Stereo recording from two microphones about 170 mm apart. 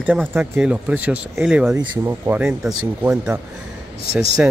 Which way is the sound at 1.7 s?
15° right (ahead or behind).